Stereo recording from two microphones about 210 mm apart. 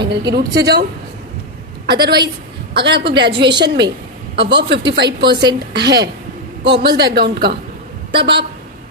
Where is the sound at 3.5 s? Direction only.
55° right (ahead or behind).